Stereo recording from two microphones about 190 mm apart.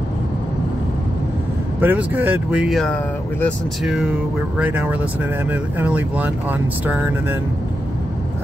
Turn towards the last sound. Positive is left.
turn(degrees=-10)  # may be behind; listen again after turning